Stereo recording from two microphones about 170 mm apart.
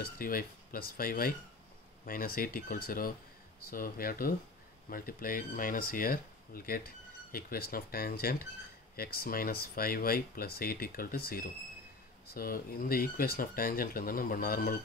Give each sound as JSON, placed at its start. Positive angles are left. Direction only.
{"t": 0.0, "sound": "speech", "side_deg": 55}